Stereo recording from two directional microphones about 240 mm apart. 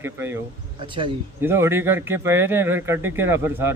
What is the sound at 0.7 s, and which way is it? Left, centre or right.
Speech, right.